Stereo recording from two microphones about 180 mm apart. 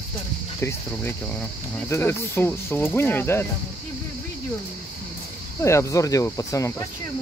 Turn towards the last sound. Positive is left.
turn(degrees=15)  # may be behind; listen again after turning